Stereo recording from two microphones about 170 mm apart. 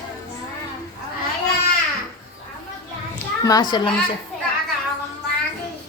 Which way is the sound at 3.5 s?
25° left (ahead or behind).